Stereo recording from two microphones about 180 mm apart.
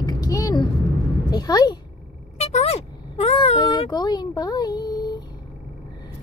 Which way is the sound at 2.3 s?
35° left (ahead or behind).